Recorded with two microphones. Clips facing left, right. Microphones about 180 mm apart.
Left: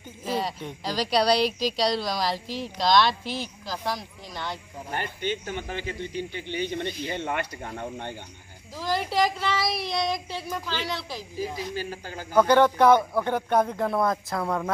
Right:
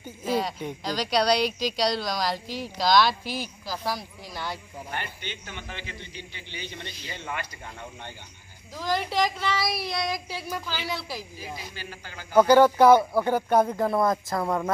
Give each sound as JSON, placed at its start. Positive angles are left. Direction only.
{"t": 0.2, "sound": "speech", "side_deg": 0}
{"t": 4.9, "sound": "a man's voice", "side_deg": 45}
{"t": 8.7, "sound": "speech", "side_deg": 0}
{"t": 11.7, "sound": "a man's voice", "side_deg": 40}
{"t": 12.4, "sound": "speech", "side_deg": -5}